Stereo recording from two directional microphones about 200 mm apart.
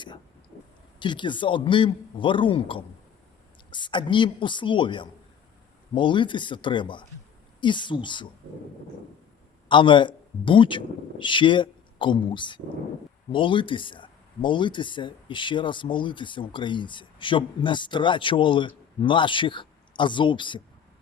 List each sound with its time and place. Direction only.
0.9 s speech: 25° left (ahead or behind)
9.6 s speech: 25° left (ahead or behind)